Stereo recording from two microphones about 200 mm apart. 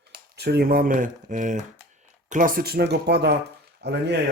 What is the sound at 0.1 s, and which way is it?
Speech, 55° right (ahead or behind).